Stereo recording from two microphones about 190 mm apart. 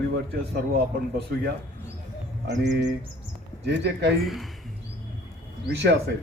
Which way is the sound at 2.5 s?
65° right (ahead or behind).